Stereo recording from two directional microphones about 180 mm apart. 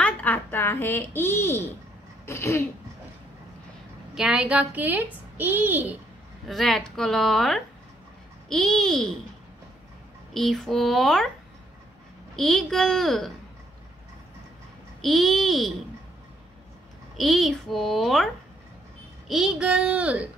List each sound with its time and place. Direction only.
0.0 s a child's voice: 10° left (ahead or behind)
4.1 s a child's voice: 5° right (ahead or behind)
6.4 s a woman's voice: centre (ahead or behind)
10.3 s a woman's voice: centre (ahead or behind)
12.4 s a woman's voice: centre (ahead or behind)
15.0 s a woman's voice: centre (ahead or behind)
17.2 s a woman's voice: centre (ahead or behind)